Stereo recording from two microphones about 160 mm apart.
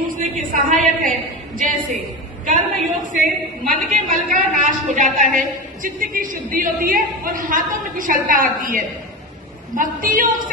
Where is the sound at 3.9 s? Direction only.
60° right (ahead or behind).